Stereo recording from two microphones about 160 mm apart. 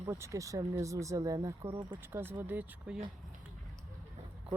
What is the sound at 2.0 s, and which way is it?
Speech, 15° right (ahead or behind).